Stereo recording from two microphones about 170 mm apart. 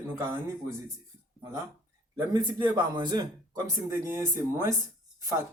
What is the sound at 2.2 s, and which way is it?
Speech, 25° right (ahead or behind).